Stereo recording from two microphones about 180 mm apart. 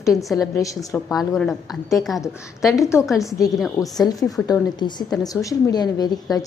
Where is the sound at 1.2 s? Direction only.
Centre (ahead or behind).